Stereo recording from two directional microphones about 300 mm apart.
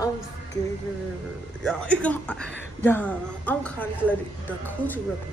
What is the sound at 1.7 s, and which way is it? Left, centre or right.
A woman's voice, centre.